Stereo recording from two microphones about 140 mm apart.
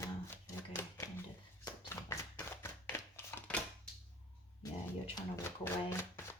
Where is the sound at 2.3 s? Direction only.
20° left (ahead or behind).